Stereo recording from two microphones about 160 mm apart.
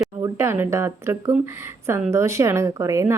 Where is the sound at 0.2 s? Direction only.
15° right (ahead or behind).